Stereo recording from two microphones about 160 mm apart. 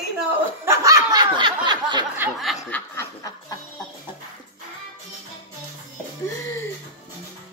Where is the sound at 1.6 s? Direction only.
30° right (ahead or behind).